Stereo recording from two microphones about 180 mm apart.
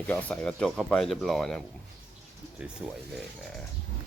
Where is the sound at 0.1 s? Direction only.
10° left (ahead or behind).